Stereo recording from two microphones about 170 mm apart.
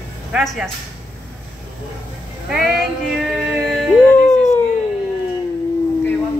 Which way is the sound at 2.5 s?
Centre (ahead or behind).